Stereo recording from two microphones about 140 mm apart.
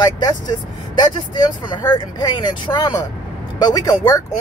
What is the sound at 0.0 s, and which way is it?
Speech, 30° left (ahead or behind).